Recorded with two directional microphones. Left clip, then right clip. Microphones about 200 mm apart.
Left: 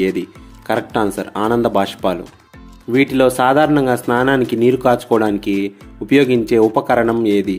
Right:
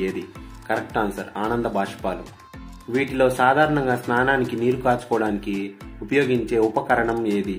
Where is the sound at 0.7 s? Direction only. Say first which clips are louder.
Left 6 dB; 50° left (ahead or behind).